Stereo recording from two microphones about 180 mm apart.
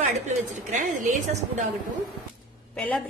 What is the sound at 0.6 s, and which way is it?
Speech, 45° right (ahead or behind).